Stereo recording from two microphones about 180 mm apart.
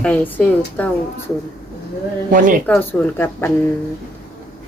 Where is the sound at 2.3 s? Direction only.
50° right (ahead or behind).